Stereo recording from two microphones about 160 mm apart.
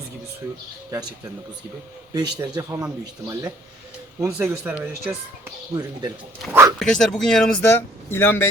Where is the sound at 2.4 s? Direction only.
20° right (ahead or behind).